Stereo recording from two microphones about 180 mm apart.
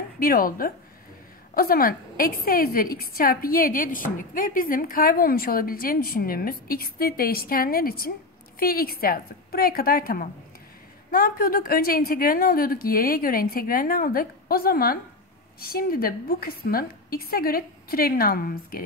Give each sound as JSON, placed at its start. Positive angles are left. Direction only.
{"t": 0.2, "sound": "a woman's voice", "side_deg": 55}